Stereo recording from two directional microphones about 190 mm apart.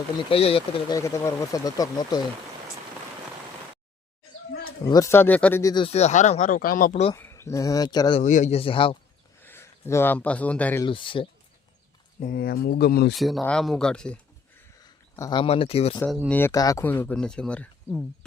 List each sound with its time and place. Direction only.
0.3 s speech: 30° left (ahead or behind)
0.9 s speech: 15° left (ahead or behind)
4.9 s speech: 15° left (ahead or behind)
5.7 s speech: 30° left (ahead or behind); by 7.0 s 45° left (ahead or behind)
7.2 s speech: 15° left (ahead or behind)
8.2 s speech: 40° left (ahead or behind)
9.4 s speech: 10° left (ahead or behind)
10.8 s speech: 25° left (ahead or behind)
12.2 s speech: 50° left (ahead or behind)
13.1 s speech: centre (ahead or behind)
14.8 s speech: 20° left (ahead or behind)
16.3 s speech: 15° left (ahead or behind)